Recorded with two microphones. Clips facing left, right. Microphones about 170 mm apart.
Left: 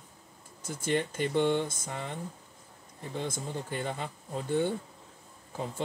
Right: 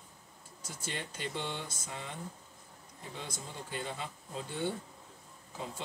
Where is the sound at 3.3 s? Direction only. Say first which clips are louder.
Left 7 dB; 50° left (ahead or behind).